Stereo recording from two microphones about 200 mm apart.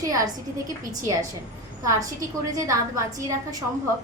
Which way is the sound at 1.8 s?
15° right (ahead or behind).